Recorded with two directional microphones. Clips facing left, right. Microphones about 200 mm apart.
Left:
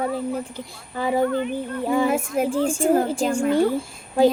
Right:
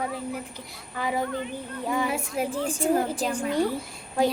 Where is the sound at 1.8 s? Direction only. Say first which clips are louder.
Left 6 dB; 30° left (ahead or behind).